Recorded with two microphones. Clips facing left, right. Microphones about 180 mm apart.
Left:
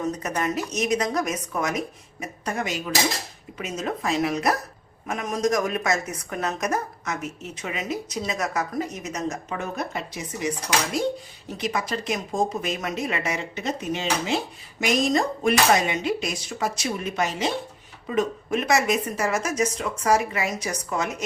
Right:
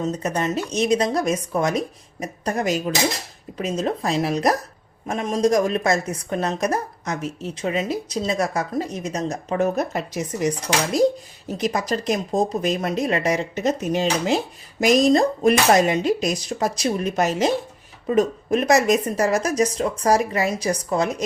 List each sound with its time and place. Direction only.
0.0 s a woman's voice: 30° right (ahead or behind)
9.7 s a woman's voice: 45° right (ahead or behind)
11.5 s a woman's voice: 40° right (ahead or behind)